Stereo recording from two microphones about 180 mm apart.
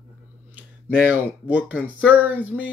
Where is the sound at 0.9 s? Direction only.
10° right (ahead or behind).